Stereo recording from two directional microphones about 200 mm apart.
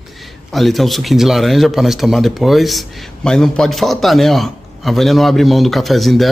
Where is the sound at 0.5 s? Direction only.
Centre (ahead or behind).